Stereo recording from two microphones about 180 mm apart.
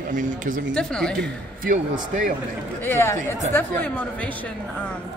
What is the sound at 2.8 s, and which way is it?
A woman's voice, 15° left (ahead or behind).